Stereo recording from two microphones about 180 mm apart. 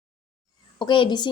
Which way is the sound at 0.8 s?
25° left (ahead or behind).